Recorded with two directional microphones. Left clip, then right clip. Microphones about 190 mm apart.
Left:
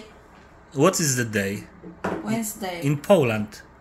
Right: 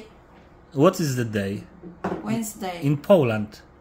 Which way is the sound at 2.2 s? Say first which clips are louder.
Left 1 dB; 5° right (ahead or behind).